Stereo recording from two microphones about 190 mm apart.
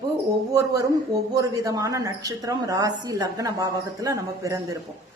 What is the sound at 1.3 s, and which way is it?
A woman's voice, 20° right (ahead or behind).